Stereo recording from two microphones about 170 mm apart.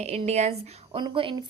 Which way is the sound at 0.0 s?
40° right (ahead or behind).